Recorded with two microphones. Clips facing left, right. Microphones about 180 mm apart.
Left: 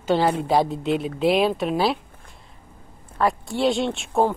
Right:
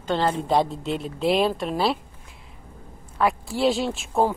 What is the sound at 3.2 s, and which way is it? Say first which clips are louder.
Speech: even; centre (ahead or behind).